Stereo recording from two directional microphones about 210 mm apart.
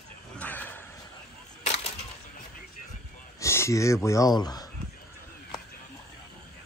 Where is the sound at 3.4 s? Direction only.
15° left (ahead or behind).